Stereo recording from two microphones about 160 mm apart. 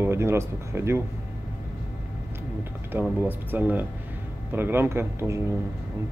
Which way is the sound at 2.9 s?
10° right (ahead or behind).